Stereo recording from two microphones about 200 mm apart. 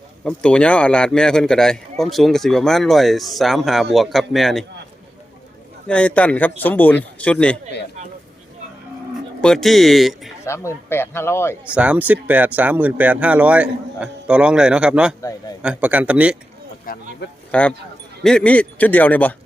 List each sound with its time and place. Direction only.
0.3 s speech: 5° left (ahead or behind)
5.9 s a man's voice: 5° left (ahead or behind)
9.4 s speech: centre (ahead or behind)
10.4 s a man's voice: 15° left (ahead or behind)
11.6 s speech: 5° right (ahead or behind)
15.2 s a man's voice: 15° left (ahead or behind)
15.6 s speech: 5° right (ahead or behind)
16.8 s speech: 50° left (ahead or behind)
17.5 s a man's voice: 5° left (ahead or behind)